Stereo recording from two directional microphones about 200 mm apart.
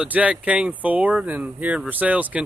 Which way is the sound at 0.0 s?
5° right (ahead or behind).